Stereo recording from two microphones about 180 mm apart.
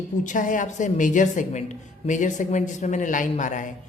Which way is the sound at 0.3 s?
45° left (ahead or behind).